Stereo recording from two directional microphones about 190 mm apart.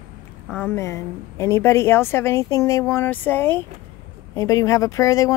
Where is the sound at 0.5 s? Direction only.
15° left (ahead or behind).